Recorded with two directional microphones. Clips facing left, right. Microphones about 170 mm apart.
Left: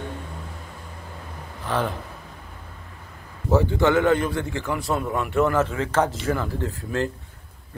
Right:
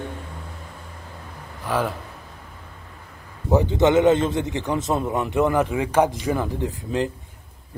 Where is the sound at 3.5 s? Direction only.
20° right (ahead or behind).